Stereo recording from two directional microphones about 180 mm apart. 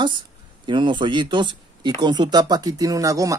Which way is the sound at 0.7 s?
25° right (ahead or behind).